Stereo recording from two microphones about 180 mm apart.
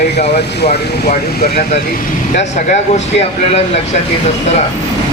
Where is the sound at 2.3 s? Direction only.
40° left (ahead or behind).